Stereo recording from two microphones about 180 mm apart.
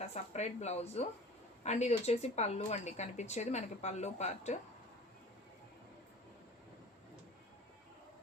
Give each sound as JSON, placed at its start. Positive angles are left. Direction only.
{"t": 0.0, "sound": "speech", "side_deg": 40}